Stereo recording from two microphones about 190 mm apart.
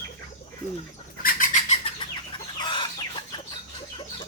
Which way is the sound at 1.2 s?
45° left (ahead or behind).